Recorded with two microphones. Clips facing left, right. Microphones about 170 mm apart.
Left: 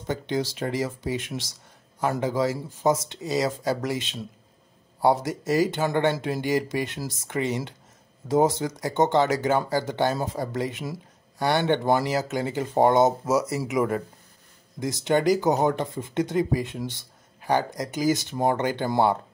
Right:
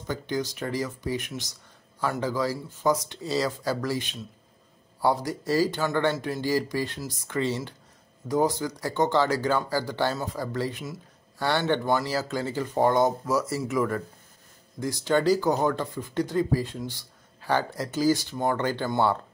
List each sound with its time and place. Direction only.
0.0 s speech: 25° left (ahead or behind)